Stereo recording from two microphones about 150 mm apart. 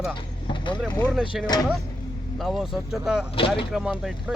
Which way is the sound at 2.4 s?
Centre (ahead or behind).